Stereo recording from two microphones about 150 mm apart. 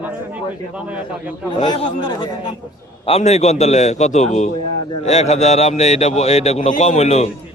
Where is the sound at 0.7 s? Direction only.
10° right (ahead or behind).